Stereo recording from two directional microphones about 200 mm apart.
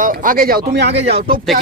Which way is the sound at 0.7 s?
55° right (ahead or behind).